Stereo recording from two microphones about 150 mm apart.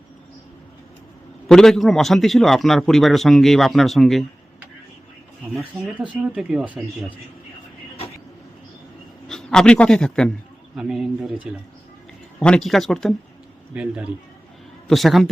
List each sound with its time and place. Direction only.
1.5 s a man's voice: 5° left (ahead or behind)
5.5 s a man's voice: centre (ahead or behind)
9.3 s a man's voice: 5° left (ahead or behind)
12.4 s a man's voice: 5° left (ahead or behind)